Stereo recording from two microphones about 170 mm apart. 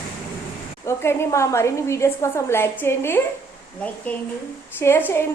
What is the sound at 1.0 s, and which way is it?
A woman's voice, 15° left (ahead or behind).